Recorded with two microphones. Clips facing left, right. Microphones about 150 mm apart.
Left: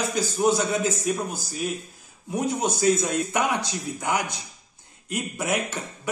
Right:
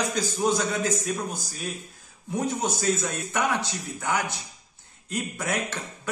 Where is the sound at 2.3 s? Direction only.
10° left (ahead or behind).